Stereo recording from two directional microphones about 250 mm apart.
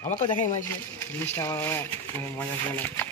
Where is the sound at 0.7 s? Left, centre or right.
Centre.